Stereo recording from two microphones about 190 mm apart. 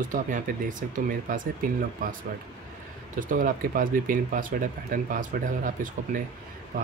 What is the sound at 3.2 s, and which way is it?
Speech, 45° right (ahead or behind).